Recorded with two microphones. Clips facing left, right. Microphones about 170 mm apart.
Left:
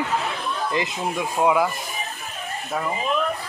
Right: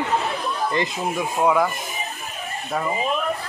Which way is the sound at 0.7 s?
Centre (ahead or behind).